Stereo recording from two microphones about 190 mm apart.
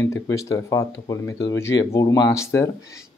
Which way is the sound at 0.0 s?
15° left (ahead or behind).